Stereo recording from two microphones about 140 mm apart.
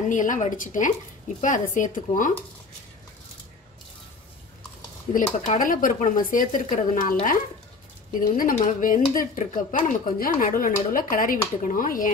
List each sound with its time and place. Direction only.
0.1 s speech: 65° left (ahead or behind)
5.1 s speech: 65° left (ahead or behind)
8.1 s speech: 90° left
8.5 s speech: 70° left (ahead or behind)